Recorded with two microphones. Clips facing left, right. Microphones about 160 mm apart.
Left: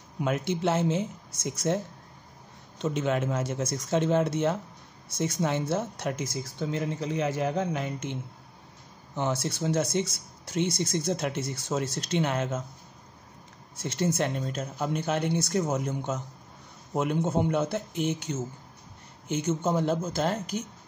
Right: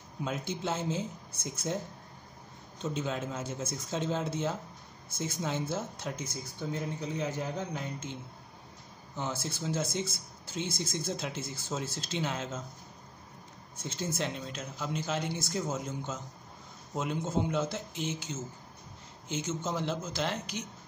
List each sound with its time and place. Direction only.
0.2 s speech: 65° left (ahead or behind); by 1.8 s 80° left
2.8 s speech: 70° left (ahead or behind)
13.7 s speech: 75° left (ahead or behind); by 20.6 s 50° left (ahead or behind)